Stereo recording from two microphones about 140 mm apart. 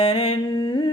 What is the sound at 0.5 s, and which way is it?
Humming, 35° left (ahead or behind).